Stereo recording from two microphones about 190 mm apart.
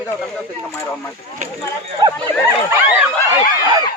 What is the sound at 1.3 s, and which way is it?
Speech, 40° right (ahead or behind).